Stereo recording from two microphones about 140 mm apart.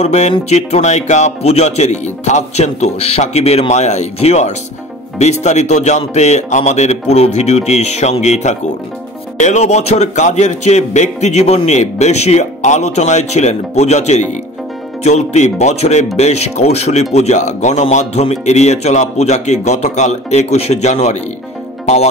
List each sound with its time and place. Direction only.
0.0 s a man's voice: 50° left (ahead or behind)